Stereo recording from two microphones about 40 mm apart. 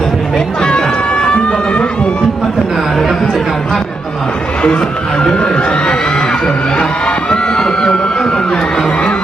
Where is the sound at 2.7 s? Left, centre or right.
Centre.